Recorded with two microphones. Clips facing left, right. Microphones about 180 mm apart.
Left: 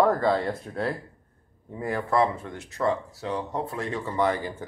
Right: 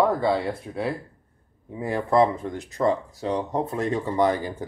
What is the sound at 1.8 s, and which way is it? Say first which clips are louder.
Speech: right 4 dB; 25° right (ahead or behind).